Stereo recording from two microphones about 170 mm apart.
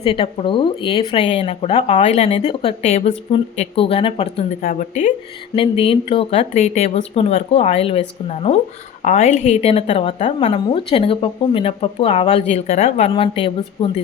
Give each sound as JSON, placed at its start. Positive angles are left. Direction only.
{"t": 0.0, "sound": "speech", "side_deg": 35}
{"t": 4.6, "sound": "a woman's voice", "side_deg": 50}
{"t": 5.5, "sound": "speech", "side_deg": 35}